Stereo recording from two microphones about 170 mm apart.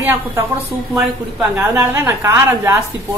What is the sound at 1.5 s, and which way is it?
A woman's voice, 15° right (ahead or behind).